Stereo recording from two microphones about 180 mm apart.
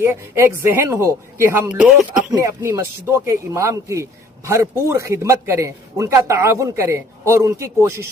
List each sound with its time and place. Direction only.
0.0 s a man's voice: 15° right (ahead or behind)
2.3 s a man's voice: 15° right (ahead or behind)